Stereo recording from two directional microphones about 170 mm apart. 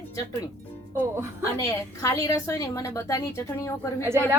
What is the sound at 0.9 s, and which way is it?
Speech, 15° right (ahead or behind).